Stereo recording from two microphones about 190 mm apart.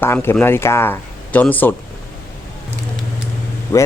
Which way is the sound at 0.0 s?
10° left (ahead or behind).